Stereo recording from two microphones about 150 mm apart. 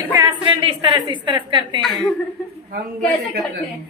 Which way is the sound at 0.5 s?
35° right (ahead or behind).